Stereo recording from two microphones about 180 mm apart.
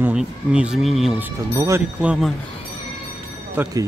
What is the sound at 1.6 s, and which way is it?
Speech, 15° right (ahead or behind).